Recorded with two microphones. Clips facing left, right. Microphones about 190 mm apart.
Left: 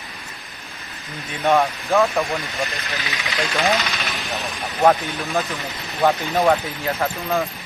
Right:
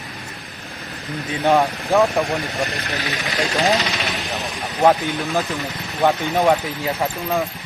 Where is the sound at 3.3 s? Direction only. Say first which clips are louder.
Right 2 dB; 35° right (ahead or behind).